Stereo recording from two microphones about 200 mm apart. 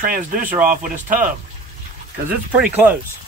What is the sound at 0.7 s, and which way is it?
Speech, 40° right (ahead or behind).